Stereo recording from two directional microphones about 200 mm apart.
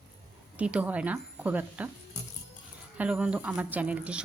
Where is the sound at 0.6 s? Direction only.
5° right (ahead or behind).